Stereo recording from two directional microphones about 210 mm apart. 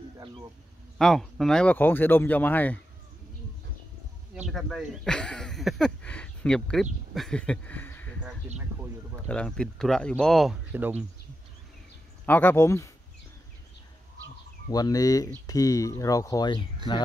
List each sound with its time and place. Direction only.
0.9 s speech: centre (ahead or behind)
4.5 s speech: centre (ahead or behind)
9.3 s speech: 5° left (ahead or behind)
12.3 s speech: 10° left (ahead or behind)
14.7 s speech: 15° left (ahead or behind)